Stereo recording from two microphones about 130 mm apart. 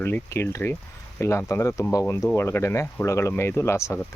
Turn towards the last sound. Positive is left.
turn(degrees=20)  # may be behind; listen again after turning